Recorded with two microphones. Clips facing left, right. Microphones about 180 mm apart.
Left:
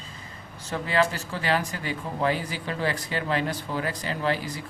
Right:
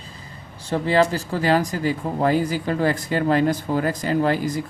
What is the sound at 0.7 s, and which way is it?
Speech, 35° right (ahead or behind).